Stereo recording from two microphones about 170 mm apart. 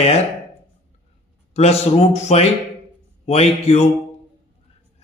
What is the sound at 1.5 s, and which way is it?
A man's voice, 40° left (ahead or behind).